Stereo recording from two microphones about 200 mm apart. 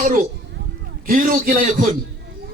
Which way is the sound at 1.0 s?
45° right (ahead or behind).